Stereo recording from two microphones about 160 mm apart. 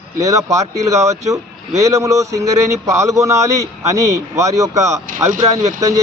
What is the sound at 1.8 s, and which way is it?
Speech, 20° right (ahead or behind).